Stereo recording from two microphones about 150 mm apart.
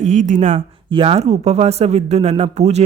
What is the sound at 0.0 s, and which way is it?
Speech, 50° right (ahead or behind).